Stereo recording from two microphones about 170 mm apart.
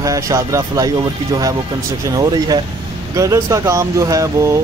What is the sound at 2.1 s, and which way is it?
Speech, 20° right (ahead or behind).